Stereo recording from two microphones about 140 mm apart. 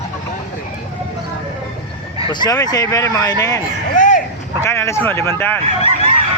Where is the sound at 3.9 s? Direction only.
65° left (ahead or behind).